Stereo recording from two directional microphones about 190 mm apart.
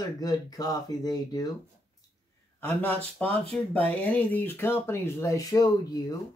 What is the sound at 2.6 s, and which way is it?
Speech, 10° left (ahead or behind).